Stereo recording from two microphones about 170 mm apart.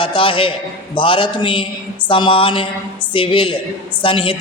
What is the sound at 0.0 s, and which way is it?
A woman's voice, 30° left (ahead or behind).